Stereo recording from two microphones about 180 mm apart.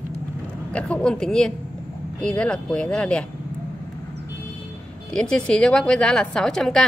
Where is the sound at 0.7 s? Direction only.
5° left (ahead or behind).